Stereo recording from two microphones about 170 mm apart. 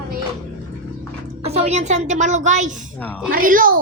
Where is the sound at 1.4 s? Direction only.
40° right (ahead or behind); by 3.8 s 55° right (ahead or behind).